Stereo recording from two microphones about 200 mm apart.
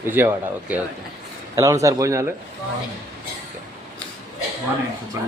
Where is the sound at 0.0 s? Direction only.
10° right (ahead or behind).